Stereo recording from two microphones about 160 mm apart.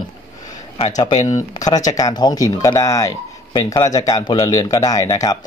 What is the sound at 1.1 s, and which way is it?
Speech, 45° left (ahead or behind).